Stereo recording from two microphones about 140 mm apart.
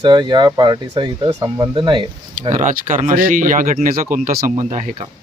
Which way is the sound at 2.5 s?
60° right (ahead or behind).